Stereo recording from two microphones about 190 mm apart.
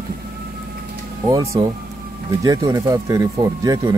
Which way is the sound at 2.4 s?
20° right (ahead or behind).